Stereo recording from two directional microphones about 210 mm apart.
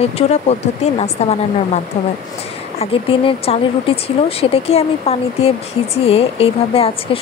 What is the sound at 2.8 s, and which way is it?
Speech, 25° left (ahead or behind).